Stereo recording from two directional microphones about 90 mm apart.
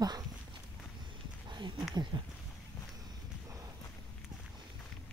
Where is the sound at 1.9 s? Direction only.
60° right (ahead or behind).